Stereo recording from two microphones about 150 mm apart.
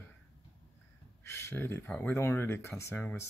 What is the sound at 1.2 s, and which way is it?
Speech, 15° left (ahead or behind).